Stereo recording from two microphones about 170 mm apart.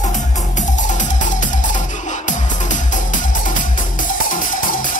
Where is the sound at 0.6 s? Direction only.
45° left (ahead or behind).